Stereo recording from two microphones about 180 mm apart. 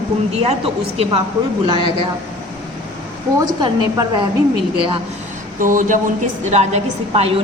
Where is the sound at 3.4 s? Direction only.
20° right (ahead or behind).